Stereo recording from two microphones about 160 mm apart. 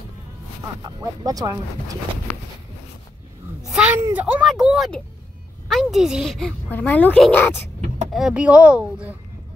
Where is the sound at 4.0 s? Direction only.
10° right (ahead or behind); by 7.6 s 10° left (ahead or behind).